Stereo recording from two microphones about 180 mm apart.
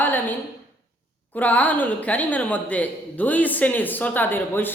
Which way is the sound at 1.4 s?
10° left (ahead or behind).